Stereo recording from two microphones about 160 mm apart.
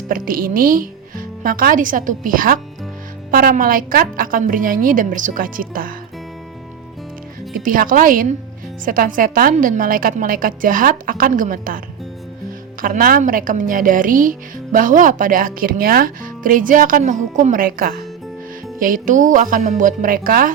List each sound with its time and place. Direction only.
0.1 s a woman's voice: 60° right (ahead or behind)
7.5 s a woman's voice: 60° right (ahead or behind)
12.8 s a woman's voice: 60° right (ahead or behind)